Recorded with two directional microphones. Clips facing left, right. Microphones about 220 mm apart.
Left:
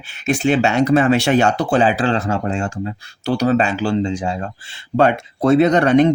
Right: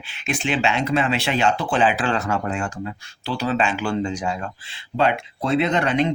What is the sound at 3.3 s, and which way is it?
Speech, 45° left (ahead or behind).